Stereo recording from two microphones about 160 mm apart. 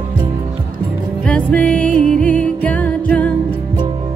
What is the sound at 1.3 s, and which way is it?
Music, 5° left (ahead or behind).